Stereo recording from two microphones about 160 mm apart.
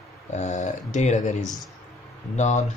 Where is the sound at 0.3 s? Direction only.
50° left (ahead or behind).